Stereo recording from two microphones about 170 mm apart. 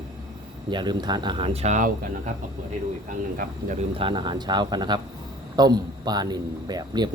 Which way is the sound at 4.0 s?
30° right (ahead or behind).